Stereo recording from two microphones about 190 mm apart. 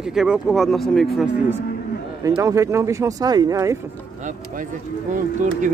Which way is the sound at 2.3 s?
15° right (ahead or behind).